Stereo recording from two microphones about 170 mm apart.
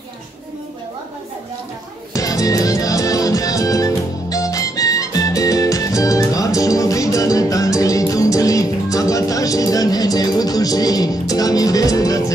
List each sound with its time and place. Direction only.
2.1 s music: 20° left (ahead or behind)